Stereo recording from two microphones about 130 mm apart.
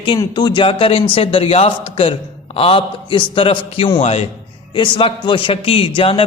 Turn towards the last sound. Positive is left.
turn(degrees=45)  # may be behind; listen again after turning